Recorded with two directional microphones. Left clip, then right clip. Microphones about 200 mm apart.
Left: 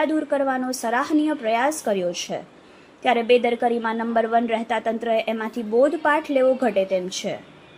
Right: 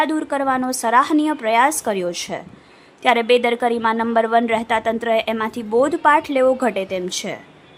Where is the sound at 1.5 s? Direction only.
Centre (ahead or behind).